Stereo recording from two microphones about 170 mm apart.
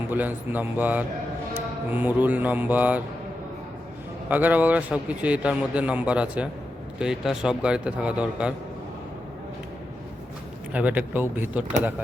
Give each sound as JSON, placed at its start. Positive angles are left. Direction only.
{"t": 0.1, "sound": "a man's voice", "side_deg": -10}
{"t": 4.3, "sound": "a man's voice", "side_deg": -10}
{"t": 10.7, "sound": "a man's voice", "side_deg": -10}